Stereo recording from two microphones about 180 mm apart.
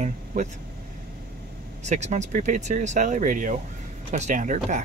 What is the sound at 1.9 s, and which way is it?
Speech, 40° right (ahead or behind).